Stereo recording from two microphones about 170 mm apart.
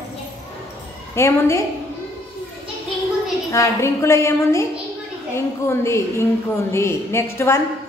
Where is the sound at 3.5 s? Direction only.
15° left (ahead or behind).